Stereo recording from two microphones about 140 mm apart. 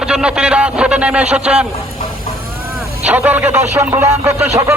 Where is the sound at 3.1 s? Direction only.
10° right (ahead or behind).